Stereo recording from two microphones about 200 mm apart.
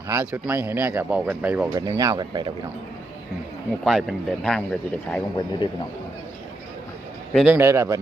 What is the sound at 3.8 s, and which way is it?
Speech, centre (ahead or behind).